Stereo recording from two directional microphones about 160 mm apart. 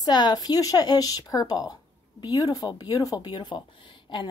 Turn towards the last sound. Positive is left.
turn(degrees=30)  # may be behind; listen again after turning